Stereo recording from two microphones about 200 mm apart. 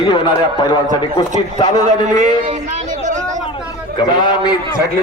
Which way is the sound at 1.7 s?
40° right (ahead or behind).